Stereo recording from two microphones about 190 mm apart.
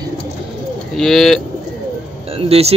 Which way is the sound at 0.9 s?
Centre (ahead or behind).